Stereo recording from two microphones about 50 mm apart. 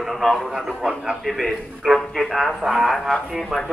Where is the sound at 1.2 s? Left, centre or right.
Centre.